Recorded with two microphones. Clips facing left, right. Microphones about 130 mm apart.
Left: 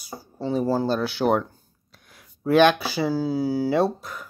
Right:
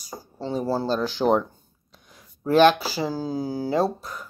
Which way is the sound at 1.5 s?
5° left (ahead or behind).